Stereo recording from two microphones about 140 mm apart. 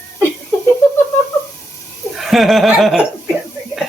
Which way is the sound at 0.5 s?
15° left (ahead or behind).